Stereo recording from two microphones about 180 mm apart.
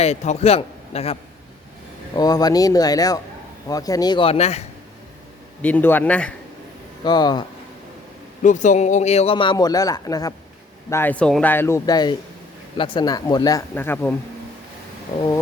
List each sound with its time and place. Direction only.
0.0 s a man's voice: 35° left (ahead or behind)
2.1 s speech: 20° left (ahead or behind)
5.6 s speech: 10° left (ahead or behind)
7.0 s speech: 25° left (ahead or behind)
8.4 s speech: 45° left (ahead or behind); by 14.2 s 10° left (ahead or behind)